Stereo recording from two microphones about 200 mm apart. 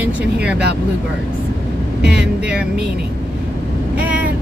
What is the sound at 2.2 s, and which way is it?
Speech, 5° right (ahead or behind).